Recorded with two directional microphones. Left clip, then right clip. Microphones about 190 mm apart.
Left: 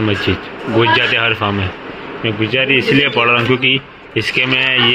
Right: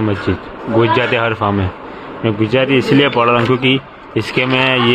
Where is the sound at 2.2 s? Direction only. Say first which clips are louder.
Right 1 dB; 20° right (ahead or behind).